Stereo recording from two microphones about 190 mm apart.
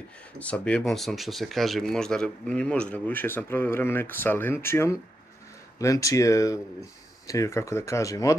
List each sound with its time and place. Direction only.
0.4 s speech: 5° left (ahead or behind)